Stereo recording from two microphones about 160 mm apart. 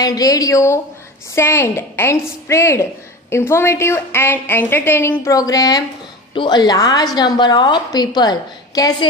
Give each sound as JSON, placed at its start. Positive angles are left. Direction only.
{"t": 0.0, "sound": "a woman's voice", "side_deg": 20}